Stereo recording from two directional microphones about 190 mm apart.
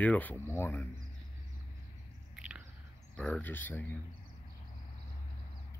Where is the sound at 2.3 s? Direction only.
5° right (ahead or behind).